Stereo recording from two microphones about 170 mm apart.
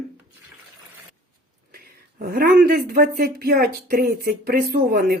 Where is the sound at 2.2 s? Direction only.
60° right (ahead or behind).